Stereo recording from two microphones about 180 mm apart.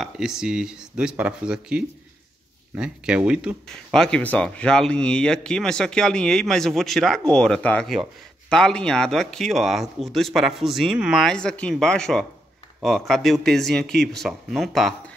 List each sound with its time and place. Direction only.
0.0 s speech: 5° right (ahead or behind)